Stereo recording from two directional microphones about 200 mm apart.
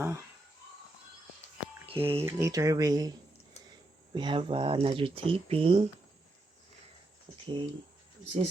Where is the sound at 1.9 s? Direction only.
30° right (ahead or behind).